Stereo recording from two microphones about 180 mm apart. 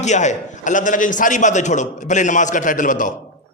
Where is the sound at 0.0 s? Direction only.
40° left (ahead or behind).